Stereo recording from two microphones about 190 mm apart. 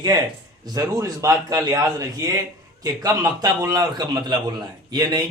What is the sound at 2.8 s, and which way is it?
A man's voice, 20° right (ahead or behind).